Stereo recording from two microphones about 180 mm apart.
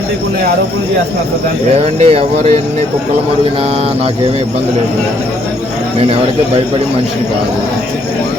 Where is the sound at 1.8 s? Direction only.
35° right (ahead or behind).